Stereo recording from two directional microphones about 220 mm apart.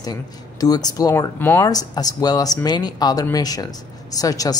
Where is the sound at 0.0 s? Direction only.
15° left (ahead or behind).